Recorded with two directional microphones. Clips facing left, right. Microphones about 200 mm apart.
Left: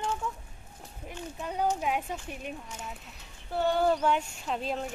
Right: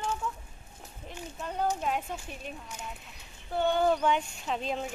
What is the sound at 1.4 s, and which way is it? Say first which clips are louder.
Speech: left 1 dB; 10° left (ahead or behind).